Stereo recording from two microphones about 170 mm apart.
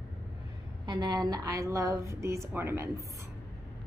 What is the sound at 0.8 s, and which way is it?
A woman's voice, 25° right (ahead or behind).